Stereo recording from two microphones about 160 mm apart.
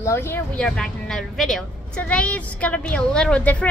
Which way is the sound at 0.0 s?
15° left (ahead or behind).